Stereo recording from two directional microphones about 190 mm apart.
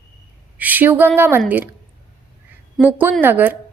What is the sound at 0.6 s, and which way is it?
A woman's voice, 10° right (ahead or behind).